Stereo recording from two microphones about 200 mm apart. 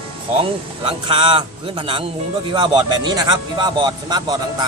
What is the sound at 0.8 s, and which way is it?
Speech, 25° right (ahead or behind).